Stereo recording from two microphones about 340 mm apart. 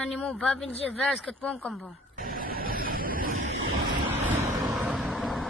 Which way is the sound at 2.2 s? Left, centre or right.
Right.